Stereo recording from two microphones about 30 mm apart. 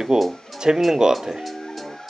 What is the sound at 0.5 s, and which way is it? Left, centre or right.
Music, centre.